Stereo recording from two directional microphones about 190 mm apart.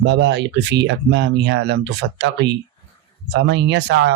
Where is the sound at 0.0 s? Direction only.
65° right (ahead or behind).